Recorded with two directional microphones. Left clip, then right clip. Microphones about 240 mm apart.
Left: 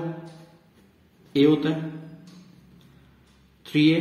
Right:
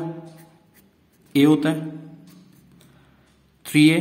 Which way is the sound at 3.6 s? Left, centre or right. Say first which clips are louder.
Right 4 dB; right.